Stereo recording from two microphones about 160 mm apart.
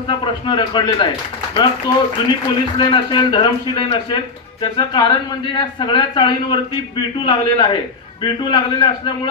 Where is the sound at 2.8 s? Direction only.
30° left (ahead or behind).